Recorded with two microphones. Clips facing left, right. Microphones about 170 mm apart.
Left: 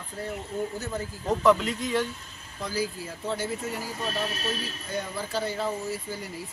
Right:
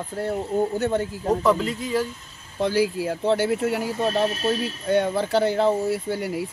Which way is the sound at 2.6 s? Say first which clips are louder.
Right 9 dB; 75° right (ahead or behind).